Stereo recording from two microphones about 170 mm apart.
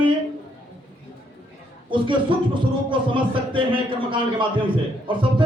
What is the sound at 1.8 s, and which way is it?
A man's voice, 30° right (ahead or behind).